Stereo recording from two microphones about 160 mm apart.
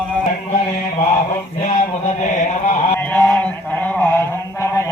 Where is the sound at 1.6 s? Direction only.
50° left (ahead or behind).